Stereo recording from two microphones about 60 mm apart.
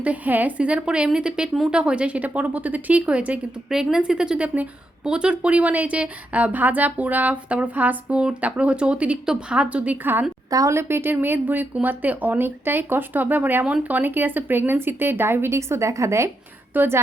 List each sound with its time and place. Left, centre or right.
0.0 s a woman's voice: right
10.7 s speech: right
16.7 s speech: right